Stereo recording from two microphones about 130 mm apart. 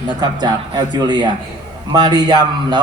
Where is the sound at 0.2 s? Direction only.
30° right (ahead or behind).